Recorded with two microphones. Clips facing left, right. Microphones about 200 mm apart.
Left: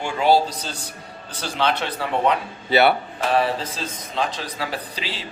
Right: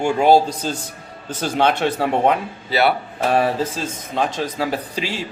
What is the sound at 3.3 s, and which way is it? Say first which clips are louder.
Speech: right 3 dB; 45° right (ahead or behind).